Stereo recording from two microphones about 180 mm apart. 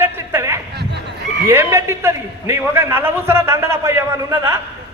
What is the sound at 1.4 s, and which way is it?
A man's voice, 15° right (ahead or behind).